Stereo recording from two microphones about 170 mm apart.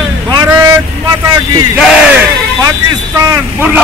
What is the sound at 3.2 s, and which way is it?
Speech, 20° right (ahead or behind).